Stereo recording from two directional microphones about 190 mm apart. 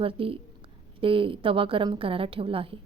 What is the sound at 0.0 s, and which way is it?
A woman's voice, 30° right (ahead or behind).